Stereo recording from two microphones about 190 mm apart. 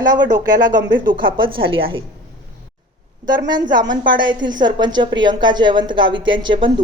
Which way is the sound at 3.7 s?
25° right (ahead or behind).